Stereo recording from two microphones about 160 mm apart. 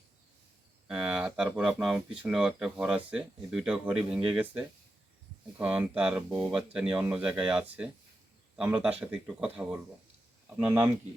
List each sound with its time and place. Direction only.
0.9 s speech: 5° right (ahead or behind)